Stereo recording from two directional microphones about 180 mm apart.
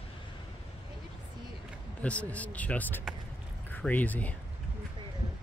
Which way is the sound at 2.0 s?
5° left (ahead or behind).